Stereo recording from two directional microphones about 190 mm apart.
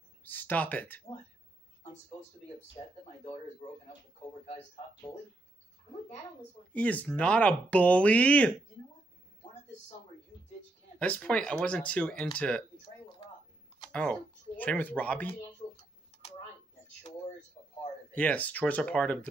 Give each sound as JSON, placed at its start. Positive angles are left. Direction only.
{"t": 0.2, "sound": "speech", "side_deg": 10}
{"t": 6.7, "sound": "speech", "side_deg": 5}
{"t": 11.0, "sound": "speech", "side_deg": 5}
{"t": 14.6, "sound": "speech", "side_deg": 10}
{"t": 17.6, "sound": "a sound", "side_deg": 30}
{"t": 18.1, "sound": "speech", "side_deg": 5}